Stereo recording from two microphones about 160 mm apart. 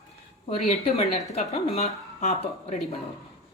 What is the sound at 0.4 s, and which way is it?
Speech, 40° left (ahead or behind).